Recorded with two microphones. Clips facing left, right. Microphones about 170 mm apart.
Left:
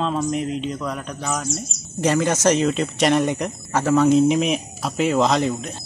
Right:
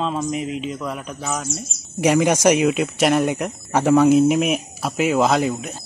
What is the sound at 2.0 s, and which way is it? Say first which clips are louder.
Speech: right 3 dB; 15° right (ahead or behind).